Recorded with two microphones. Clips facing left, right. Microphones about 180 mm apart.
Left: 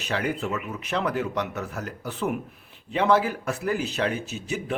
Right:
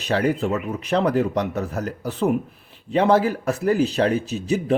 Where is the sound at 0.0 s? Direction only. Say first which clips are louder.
Right 7 dB; 35° right (ahead or behind).